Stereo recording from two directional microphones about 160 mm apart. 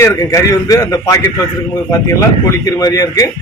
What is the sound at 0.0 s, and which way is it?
A man's voice, 20° left (ahead or behind).